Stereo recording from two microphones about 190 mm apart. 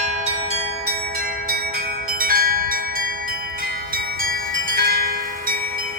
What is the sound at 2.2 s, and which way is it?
Bell, 50° right (ahead or behind).